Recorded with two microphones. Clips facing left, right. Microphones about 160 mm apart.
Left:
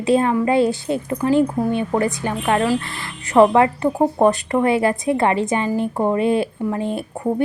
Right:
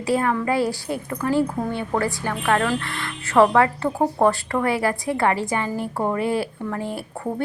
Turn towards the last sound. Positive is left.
turn(degrees=20)  # may be behind; listen again after turning